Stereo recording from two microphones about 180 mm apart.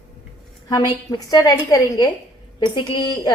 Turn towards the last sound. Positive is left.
turn(degrees=25)  # may be behind; listen again after turning